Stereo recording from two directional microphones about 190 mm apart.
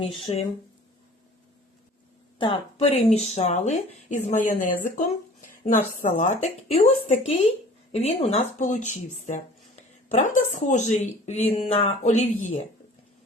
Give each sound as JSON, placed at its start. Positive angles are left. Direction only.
{"t": 0.3, "sound": "speech", "side_deg": 25}
{"t": 2.4, "sound": "speech", "side_deg": 30}
{"t": 7.9, "sound": "speech", "side_deg": 35}